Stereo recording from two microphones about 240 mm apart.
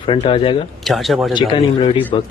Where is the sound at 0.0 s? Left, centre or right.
Left.